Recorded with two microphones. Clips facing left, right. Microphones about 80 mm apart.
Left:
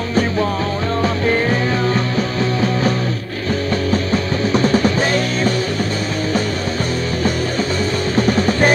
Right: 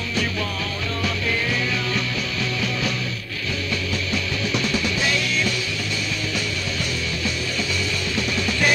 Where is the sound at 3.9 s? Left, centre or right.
Left.